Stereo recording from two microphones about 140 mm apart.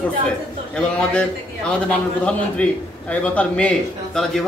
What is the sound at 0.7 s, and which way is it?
A man's voice, 5° left (ahead or behind).